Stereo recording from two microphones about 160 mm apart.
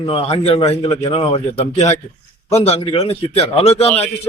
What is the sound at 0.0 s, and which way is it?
A man's voice, 35° left (ahead or behind).